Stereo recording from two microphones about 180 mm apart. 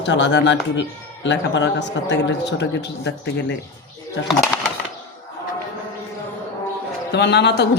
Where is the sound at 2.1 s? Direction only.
80° left.